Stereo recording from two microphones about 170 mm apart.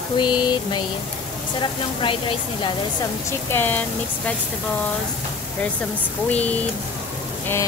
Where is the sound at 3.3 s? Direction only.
10° left (ahead or behind).